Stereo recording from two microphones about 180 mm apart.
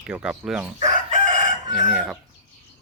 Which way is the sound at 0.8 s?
40° right (ahead or behind).